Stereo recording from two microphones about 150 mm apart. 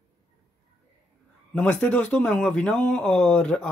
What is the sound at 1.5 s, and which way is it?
Speech, 10° left (ahead or behind).